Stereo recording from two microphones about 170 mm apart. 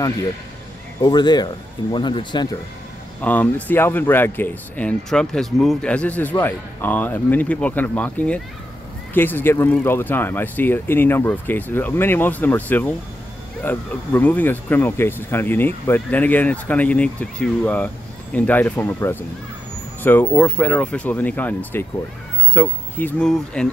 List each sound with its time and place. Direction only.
1.0 s speech: 25° left (ahead or behind)
3.2 s speech: 10° left (ahead or behind)